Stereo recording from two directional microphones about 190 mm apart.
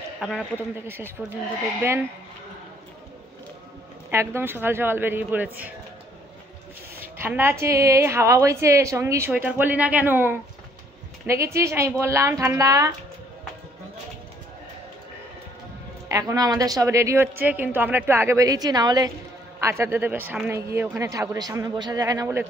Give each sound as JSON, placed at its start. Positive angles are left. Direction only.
{"t": 0.2, "sound": "a man's voice", "side_deg": 0}
{"t": 0.8, "sound": "a woman's voice", "side_deg": -10}
{"t": 4.1, "sound": "a woman's voice", "side_deg": -15}
{"t": 7.0, "sound": "a woman's voice", "side_deg": -10}
{"t": 16.1, "sound": "a woman's voice", "side_deg": -15}